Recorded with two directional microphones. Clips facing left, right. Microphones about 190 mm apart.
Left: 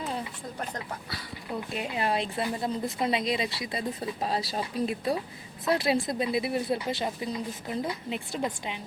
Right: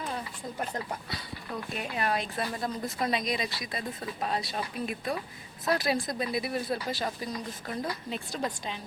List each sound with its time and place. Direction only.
1.5 s a woman's voice: 20° left (ahead or behind)